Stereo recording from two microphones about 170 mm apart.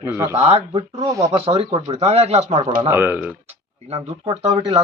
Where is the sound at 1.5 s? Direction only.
40° right (ahead or behind).